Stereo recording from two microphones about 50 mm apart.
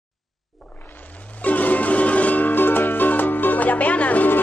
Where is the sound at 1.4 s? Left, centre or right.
Left.